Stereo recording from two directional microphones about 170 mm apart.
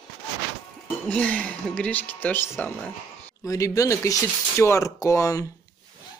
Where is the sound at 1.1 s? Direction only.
5° left (ahead or behind).